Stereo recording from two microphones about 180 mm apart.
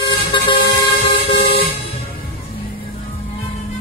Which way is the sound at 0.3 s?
25° left (ahead or behind).